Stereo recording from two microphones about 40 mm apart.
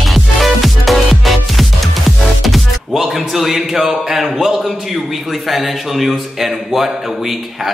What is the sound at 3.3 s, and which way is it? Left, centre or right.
A man's voice, centre.